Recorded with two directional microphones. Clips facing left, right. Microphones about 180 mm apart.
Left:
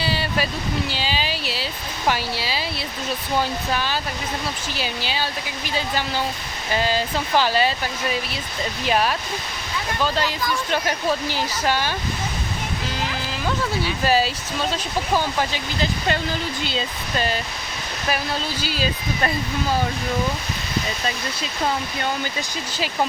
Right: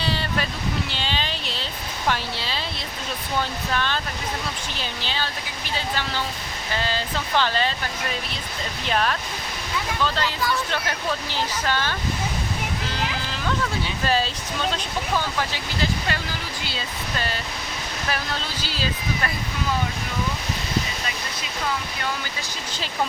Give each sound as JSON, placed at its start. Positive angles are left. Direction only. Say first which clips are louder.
{"t": 0.0, "sound": "a sound", "louder": "left 2 dB", "side_deg": 5}
{"t": 2.0, "sound": "speech", "louder": "left 3 dB", "side_deg": 5}
{"t": 3.7, "sound": "speech", "louder": "left 2 dB", "side_deg": 5}
{"t": 8.9, "sound": "speech", "louder": "left 2 dB", "side_deg": 10}
{"t": 14.0, "sound": "speech", "louder": "left 4 dB", "side_deg": 5}
{"t": 15.4, "sound": "speech", "louder": "left 3 dB", "side_deg": 20}